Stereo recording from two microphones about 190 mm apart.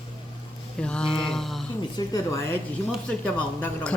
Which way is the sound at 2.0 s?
15° left (ahead or behind).